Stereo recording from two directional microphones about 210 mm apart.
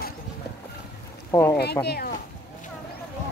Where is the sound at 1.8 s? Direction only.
50° left (ahead or behind).